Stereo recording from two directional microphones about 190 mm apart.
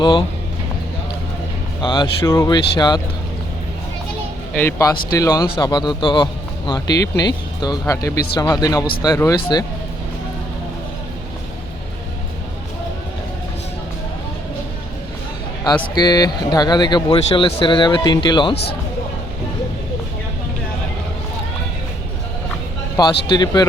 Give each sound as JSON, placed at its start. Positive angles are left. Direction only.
{"t": 0.0, "sound": "speech", "side_deg": 25}
{"t": 1.8, "sound": "speech", "side_deg": 25}
{"t": 4.5, "sound": "speech", "side_deg": 15}
{"t": 16.0, "sound": "speech", "side_deg": 20}
{"t": 23.3, "sound": "speech", "side_deg": 20}